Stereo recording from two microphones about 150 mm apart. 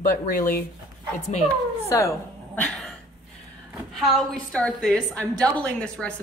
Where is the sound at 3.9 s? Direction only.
Centre (ahead or behind).